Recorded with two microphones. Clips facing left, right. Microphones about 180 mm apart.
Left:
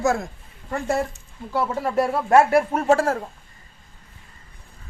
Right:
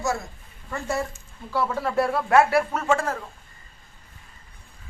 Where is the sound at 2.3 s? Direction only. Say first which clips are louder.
Left 4 dB; 45° left (ahead or behind).